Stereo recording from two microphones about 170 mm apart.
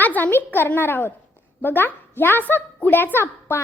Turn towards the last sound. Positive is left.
turn(degrees=15)  # may be behind; listen again after turning